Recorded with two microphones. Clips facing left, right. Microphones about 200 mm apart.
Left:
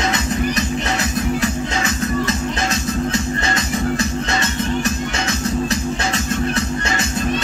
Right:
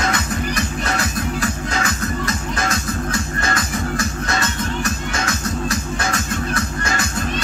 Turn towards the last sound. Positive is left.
turn(degrees=25)  # may be behind; listen again after turning